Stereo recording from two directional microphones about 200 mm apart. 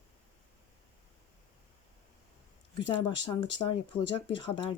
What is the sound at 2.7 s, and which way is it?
Speech, 25° left (ahead or behind).